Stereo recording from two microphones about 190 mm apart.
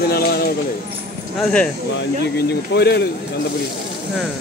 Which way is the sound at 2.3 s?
60° left (ahead or behind).